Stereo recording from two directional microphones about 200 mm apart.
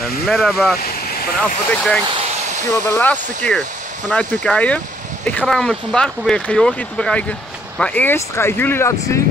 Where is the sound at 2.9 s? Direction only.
10° left (ahead or behind).